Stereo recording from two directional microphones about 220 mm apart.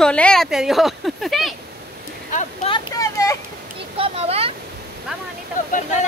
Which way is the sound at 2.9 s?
15° left (ahead or behind).